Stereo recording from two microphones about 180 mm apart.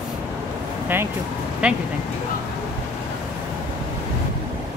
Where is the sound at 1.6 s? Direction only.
5° right (ahead or behind).